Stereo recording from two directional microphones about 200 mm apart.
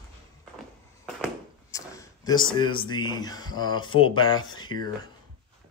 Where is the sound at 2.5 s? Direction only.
25° left (ahead or behind).